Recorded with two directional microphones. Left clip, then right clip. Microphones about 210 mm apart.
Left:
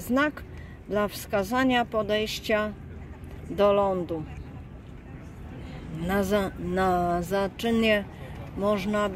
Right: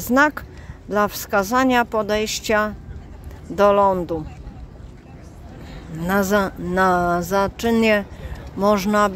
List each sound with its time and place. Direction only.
0.1 s speech: 20° right (ahead or behind)
6.0 s speech: 15° right (ahead or behind)